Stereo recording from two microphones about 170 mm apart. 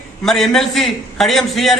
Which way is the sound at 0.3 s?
Centre (ahead or behind).